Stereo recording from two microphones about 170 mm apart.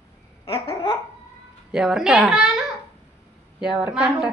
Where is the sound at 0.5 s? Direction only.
35° left (ahead or behind).